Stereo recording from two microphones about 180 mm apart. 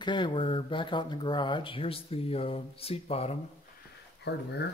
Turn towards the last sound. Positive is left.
turn(degrees=70)  # may be behind; listen again after turning